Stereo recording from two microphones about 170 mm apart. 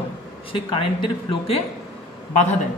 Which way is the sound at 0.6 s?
30° left (ahead or behind).